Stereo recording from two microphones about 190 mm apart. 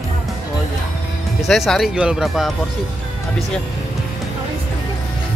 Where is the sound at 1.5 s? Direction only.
Centre (ahead or behind).